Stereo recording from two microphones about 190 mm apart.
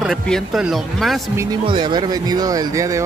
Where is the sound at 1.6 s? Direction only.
25° right (ahead or behind).